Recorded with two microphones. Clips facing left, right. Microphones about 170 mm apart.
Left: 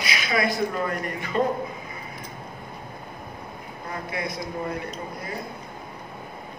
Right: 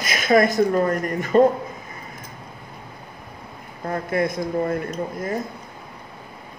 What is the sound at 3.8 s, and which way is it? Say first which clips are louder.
Speech: right 9 dB; 50° right (ahead or behind).